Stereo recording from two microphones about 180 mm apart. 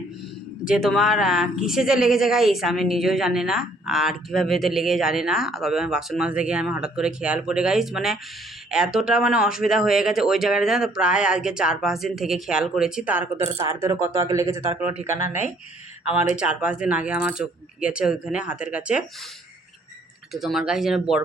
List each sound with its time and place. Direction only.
0.6 s speech: 5° right (ahead or behind)
16.3 s speech: 5° right (ahead or behind)
20.3 s speech: centre (ahead or behind)